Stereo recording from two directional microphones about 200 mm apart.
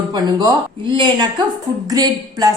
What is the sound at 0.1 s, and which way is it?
A woman's voice, 20° right (ahead or behind).